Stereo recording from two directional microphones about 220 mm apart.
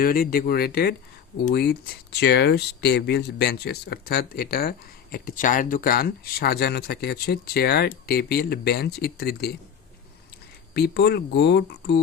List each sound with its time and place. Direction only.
0.0 s speech: 40° left (ahead or behind)
10.8 s speech: 45° left (ahead or behind)